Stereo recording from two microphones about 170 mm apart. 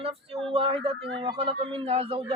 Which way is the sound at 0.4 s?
30° right (ahead or behind).